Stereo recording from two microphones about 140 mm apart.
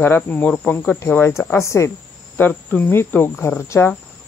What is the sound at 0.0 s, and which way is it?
Speech, 10° left (ahead or behind).